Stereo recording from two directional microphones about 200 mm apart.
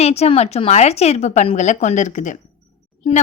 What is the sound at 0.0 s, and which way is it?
A woman's voice, 30° left (ahead or behind).